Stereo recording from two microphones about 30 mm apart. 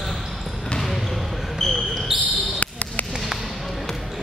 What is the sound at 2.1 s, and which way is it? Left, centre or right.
Basketball bounce, centre.